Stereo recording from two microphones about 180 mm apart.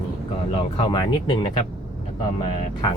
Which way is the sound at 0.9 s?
25° left (ahead or behind).